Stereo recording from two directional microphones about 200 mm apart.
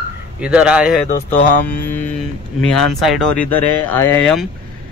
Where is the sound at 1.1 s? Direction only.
40° left (ahead or behind).